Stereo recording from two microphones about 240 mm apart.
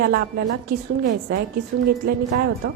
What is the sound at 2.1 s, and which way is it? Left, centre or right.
Speech, right.